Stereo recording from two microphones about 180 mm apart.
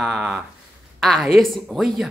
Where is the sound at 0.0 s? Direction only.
5° right (ahead or behind).